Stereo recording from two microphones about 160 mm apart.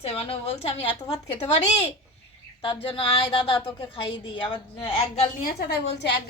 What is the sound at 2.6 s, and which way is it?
A woman's voice, 35° left (ahead or behind).